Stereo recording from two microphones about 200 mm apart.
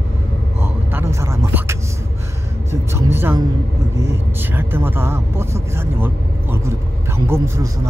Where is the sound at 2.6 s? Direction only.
15° right (ahead or behind).